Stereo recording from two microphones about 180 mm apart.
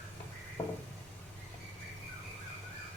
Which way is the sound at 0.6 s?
30° left (ahead or behind).